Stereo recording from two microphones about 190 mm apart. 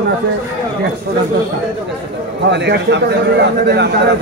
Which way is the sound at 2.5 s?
65° right (ahead or behind).